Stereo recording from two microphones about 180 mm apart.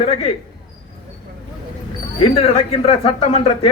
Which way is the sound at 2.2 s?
35° left (ahead or behind).